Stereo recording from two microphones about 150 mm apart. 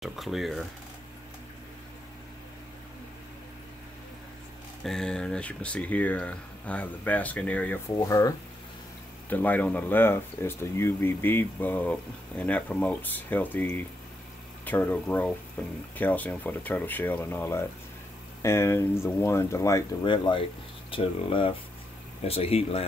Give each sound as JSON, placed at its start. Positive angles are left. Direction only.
{"t": 0.0, "sound": "speech", "side_deg": 0}
{"t": 4.8, "sound": "speech", "side_deg": 5}
{"t": 7.9, "sound": "speech", "side_deg": 20}
{"t": 9.3, "sound": "speech", "side_deg": 10}
{"t": 20.1, "sound": "speech", "side_deg": 30}